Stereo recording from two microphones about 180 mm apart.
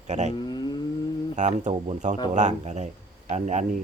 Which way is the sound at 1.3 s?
40° right (ahead or behind).